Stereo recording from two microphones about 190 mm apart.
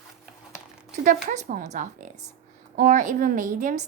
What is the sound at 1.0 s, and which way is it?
A woman's voice, 40° right (ahead or behind).